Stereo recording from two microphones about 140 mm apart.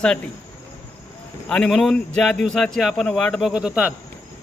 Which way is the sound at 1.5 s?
5° left (ahead or behind).